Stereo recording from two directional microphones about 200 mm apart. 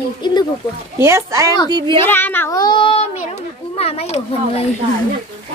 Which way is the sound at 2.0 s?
10° left (ahead or behind).